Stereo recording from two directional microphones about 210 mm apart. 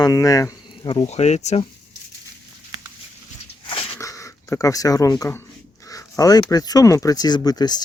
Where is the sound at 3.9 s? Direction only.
15° left (ahead or behind).